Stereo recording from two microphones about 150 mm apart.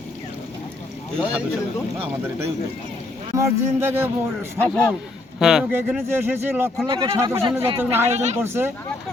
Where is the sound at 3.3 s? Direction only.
15° right (ahead or behind).